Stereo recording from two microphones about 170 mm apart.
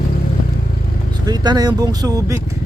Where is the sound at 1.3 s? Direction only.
25° right (ahead or behind).